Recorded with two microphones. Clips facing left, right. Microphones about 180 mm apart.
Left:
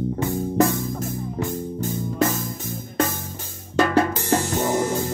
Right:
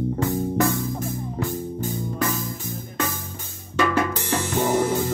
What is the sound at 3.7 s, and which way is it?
Music, 40° left (ahead or behind).